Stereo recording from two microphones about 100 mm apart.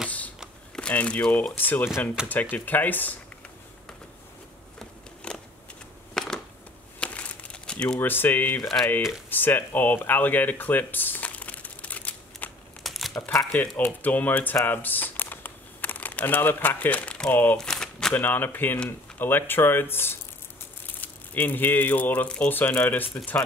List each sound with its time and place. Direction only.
0.7 s speech: 10° left (ahead or behind)
2.2 s speech: 10° right (ahead or behind)
2.5 s speech: 15° left (ahead or behind)
4.7 s a sound: 5° left (ahead or behind)
7.0 s crumpling: 15° left (ahead or behind)
8.0 s speech: 20° left (ahead or behind)
12.8 s crumpling: centre (ahead or behind)
13.4 s speech: 10° left (ahead or behind)
14.7 s crumpling: 20° left (ahead or behind)
17.6 s shuffling cards: 5° left (ahead or behind)
18.1 s speech: 20° left (ahead or behind)